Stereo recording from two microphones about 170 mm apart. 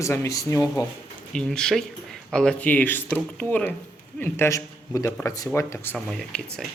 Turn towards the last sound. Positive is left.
turn(degrees=0)  # may be behind; listen again after turning